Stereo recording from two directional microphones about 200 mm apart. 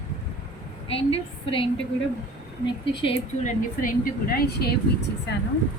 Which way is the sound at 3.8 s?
50° left (ahead or behind).